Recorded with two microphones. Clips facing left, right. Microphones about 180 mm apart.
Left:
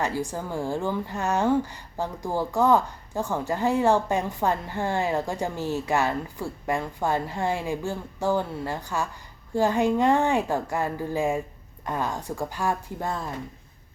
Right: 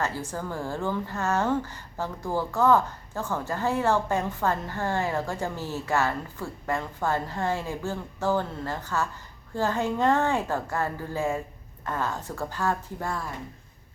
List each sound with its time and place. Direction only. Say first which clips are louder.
0.0 s a woman's voice: left 3 dB; 15° left (ahead or behind)